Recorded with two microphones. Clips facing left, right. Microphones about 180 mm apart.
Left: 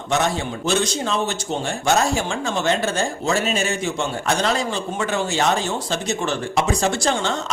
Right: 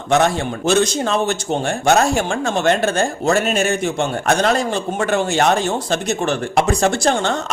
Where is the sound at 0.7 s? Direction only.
55° right (ahead or behind).